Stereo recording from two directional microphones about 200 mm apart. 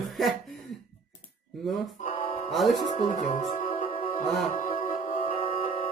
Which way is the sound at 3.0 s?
35° left (ahead or behind).